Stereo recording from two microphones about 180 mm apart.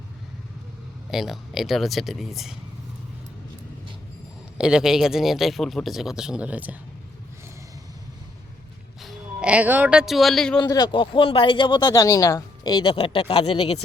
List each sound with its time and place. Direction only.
1.1 s speech: centre (ahead or behind)
4.5 s speech: 5° right (ahead or behind)
9.0 s speech: 5° right (ahead or behind)
10.6 s speech: 25° left (ahead or behind)